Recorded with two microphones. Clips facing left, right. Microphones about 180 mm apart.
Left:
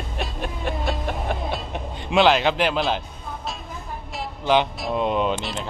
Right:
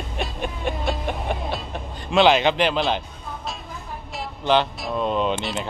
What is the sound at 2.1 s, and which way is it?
Speech, centre (ahead or behind).